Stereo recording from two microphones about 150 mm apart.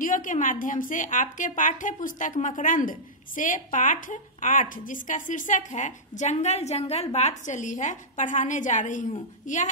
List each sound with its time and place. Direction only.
0.0 s a woman's voice: 60° left (ahead or behind)